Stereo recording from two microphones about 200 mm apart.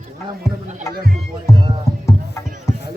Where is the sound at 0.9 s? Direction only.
50° right (ahead or behind).